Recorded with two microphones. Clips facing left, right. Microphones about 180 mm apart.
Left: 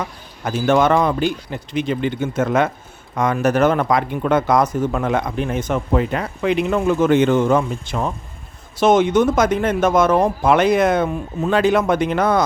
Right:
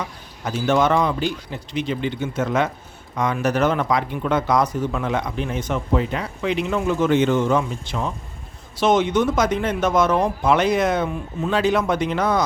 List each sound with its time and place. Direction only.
0.0 s speech: 50° left (ahead or behind)